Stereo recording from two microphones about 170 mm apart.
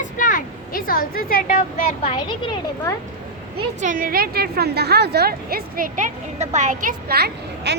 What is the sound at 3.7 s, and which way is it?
A woman's voice, 50° right (ahead or behind).